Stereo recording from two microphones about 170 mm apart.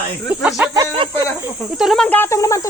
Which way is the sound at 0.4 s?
10° right (ahead or behind).